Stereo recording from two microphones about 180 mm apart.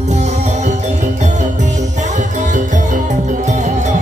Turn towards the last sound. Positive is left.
turn(degrees=-40)  # may be behind; listen again after turning